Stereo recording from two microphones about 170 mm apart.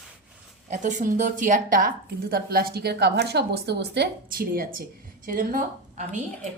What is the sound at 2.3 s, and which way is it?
A woman's voice, 65° right (ahead or behind).